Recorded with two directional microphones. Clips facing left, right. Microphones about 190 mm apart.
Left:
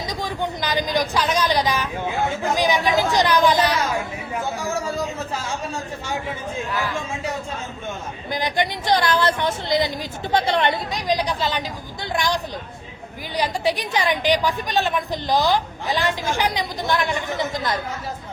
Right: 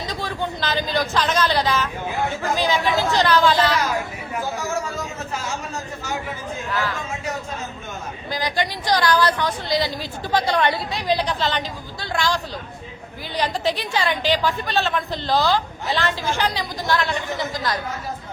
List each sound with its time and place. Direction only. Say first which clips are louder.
0.1 s a woman's voice: left 1 dB; 15° left (ahead or behind)
4.9 s a sound: left 3 dB; 30° left (ahead or behind)
6.7 s a woman's voice: right 2 dB; 10° left (ahead or behind)
8.3 s a woman's voice: left 1 dB; 20° left (ahead or behind)
11.2 s a woman's voice: even; 10° left (ahead or behind)